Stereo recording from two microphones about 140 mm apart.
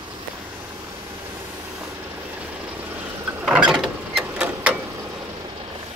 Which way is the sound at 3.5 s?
5° right (ahead or behind).